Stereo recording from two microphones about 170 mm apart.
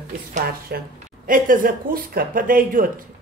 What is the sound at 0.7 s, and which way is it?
Speech, 60° right (ahead or behind).